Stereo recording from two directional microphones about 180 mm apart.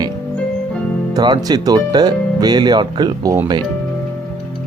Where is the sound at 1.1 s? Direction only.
25° right (ahead or behind).